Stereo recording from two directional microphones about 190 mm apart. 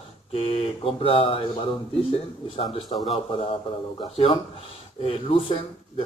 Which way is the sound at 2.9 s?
35° left (ahead or behind).